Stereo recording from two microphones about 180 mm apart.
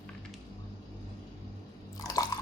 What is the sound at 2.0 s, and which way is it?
Drip, 20° left (ahead or behind).